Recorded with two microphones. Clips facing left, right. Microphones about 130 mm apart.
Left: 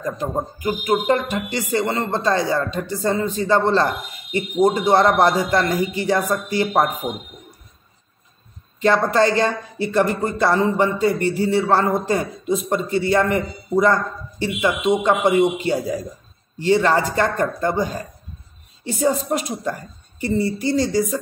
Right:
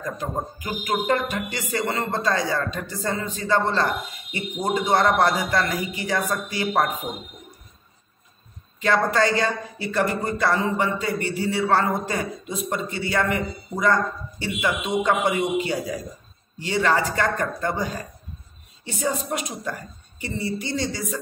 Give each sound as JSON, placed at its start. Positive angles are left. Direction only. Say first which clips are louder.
{"t": 0.0, "sound": "speech", "louder": "left 4 dB", "side_deg": 25}
{"t": 8.8, "sound": "speech", "louder": "left 4 dB", "side_deg": 30}
{"t": 18.9, "sound": "speech", "louder": "left 6 dB", "side_deg": 35}